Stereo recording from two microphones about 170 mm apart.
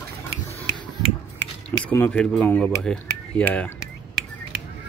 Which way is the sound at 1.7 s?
10° left (ahead or behind).